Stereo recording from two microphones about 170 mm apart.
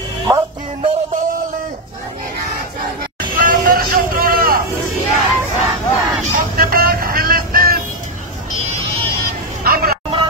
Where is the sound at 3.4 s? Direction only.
55° right (ahead or behind).